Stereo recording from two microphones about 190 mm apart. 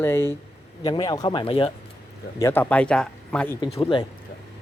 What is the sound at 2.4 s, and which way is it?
Speech, 10° left (ahead or behind).